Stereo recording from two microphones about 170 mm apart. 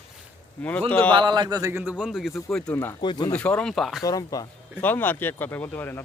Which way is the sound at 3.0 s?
25° left (ahead or behind).